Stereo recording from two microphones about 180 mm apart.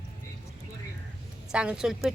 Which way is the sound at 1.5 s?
5° right (ahead or behind).